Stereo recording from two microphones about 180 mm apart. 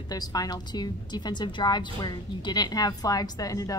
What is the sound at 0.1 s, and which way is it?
A woman's voice, 20° left (ahead or behind).